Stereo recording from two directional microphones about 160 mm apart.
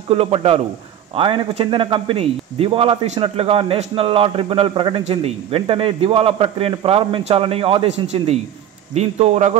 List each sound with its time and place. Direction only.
0.1 s speech: 40° right (ahead or behind)